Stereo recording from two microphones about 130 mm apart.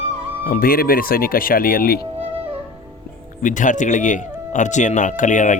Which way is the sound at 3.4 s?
75° left (ahead or behind).